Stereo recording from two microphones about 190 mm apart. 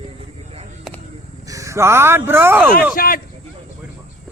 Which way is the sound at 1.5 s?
15° right (ahead or behind).